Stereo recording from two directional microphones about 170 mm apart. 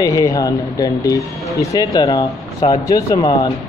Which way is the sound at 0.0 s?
20° left (ahead or behind).